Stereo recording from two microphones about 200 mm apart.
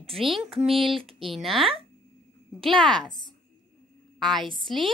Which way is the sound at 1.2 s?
Centre (ahead or behind).